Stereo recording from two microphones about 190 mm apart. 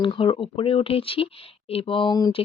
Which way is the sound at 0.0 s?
25° left (ahead or behind).